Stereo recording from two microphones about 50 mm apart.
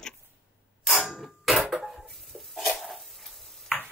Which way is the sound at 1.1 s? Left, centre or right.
Centre.